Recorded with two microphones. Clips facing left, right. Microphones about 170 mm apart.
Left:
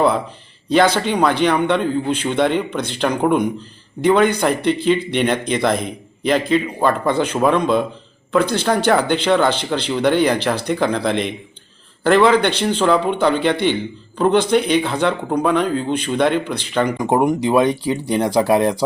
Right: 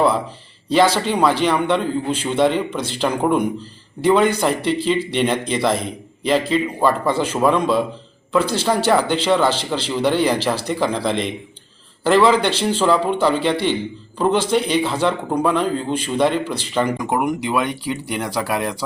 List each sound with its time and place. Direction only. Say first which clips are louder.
0.7 s speech: left 1 dB; centre (ahead or behind)
17.0 s speech: left 4 dB; 30° left (ahead or behind)
18.2 s speech: left 9 dB; 20° left (ahead or behind)